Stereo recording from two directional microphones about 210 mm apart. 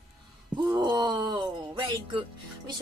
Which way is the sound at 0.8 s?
20° right (ahead or behind).